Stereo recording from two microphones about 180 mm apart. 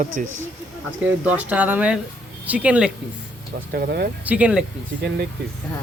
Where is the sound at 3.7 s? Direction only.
60° right (ahead or behind).